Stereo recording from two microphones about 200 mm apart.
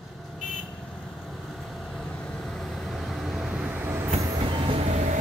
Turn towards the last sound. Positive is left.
turn(degrees=-35)  # may be behind; listen again after turning